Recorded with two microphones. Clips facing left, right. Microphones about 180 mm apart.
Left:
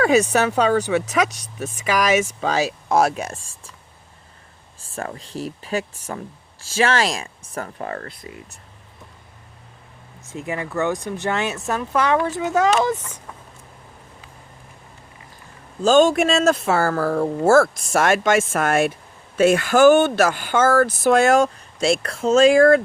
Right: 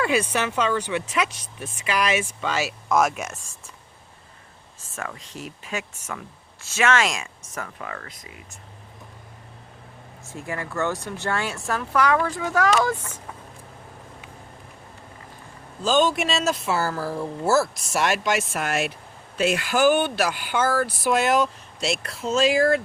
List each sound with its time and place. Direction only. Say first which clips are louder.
0.1 s speech: left 6 dB; 40° left (ahead or behind)
4.9 s speech: left 6 dB; 35° left (ahead or behind)
10.2 s speech: left 4 dB; 20° left (ahead or behind)
15.8 s speech: left 6 dB; 45° left (ahead or behind)
18.0 s speech: left 5 dB; 50° left (ahead or behind)